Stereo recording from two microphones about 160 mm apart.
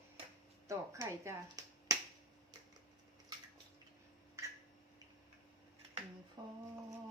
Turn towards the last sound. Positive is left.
turn(degrees=-25)  # may be behind; listen again after turning